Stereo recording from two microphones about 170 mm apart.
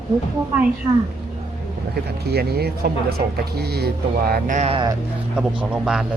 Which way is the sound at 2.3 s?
70° right (ahead or behind).